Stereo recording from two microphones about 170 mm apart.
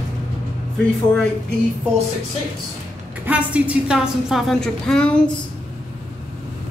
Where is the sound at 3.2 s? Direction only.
10° right (ahead or behind).